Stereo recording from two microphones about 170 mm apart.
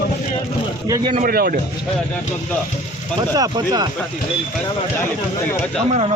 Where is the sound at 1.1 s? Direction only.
55° right (ahead or behind).